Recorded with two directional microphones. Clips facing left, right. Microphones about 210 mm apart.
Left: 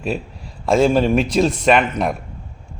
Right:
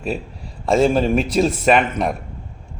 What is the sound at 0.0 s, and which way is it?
A man's voice, centre (ahead or behind).